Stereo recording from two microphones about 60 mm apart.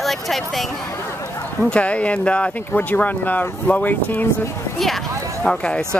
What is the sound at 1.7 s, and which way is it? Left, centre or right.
Speech, left.